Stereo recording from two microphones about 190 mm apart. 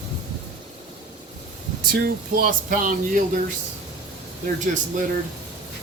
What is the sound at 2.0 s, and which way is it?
Speech, 45° right (ahead or behind).